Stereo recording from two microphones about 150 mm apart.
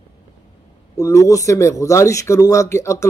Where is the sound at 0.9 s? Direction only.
20° left (ahead or behind).